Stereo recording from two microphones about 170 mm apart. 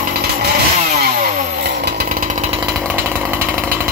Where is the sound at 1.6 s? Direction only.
80° right; by 2.6 s 40° right (ahead or behind).